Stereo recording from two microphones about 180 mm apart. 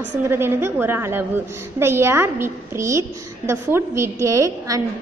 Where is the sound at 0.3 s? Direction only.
15° right (ahead or behind).